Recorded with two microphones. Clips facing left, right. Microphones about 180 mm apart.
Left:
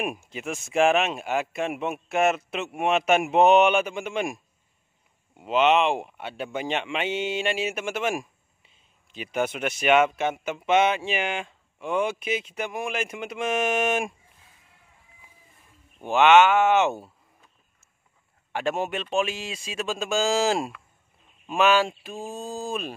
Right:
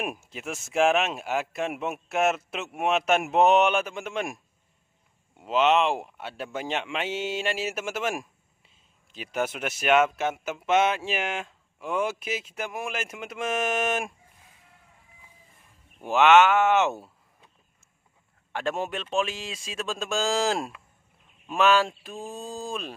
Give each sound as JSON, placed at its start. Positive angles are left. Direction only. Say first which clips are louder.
{"t": 0.0, "sound": "speech", "louder": "left 3 dB", "side_deg": 0}
{"t": 5.4, "sound": "speech", "louder": "left 1 dB", "side_deg": 0}
{"t": 16.0, "sound": "speech", "louder": "left 1 dB", "side_deg": 0}
{"t": 18.5, "sound": "speech", "louder": "left 2 dB", "side_deg": 5}